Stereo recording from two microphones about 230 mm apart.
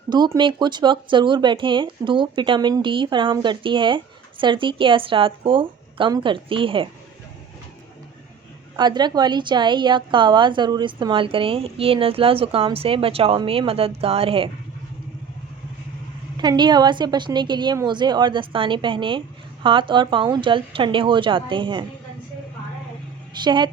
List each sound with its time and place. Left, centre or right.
0.1 s speech: centre
8.7 s speech: centre
16.4 s speech: centre
23.4 s speech: centre